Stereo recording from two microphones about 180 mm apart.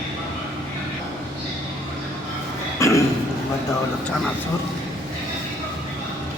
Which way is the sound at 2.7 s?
15° left (ahead or behind).